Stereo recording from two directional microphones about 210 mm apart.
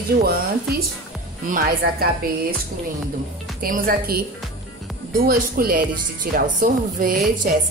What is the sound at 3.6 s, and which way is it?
A woman's voice, 40° right (ahead or behind).